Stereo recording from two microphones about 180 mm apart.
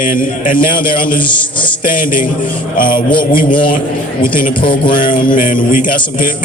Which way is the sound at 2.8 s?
50° left (ahead or behind).